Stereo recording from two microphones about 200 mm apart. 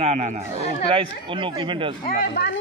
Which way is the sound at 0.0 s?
30° right (ahead or behind).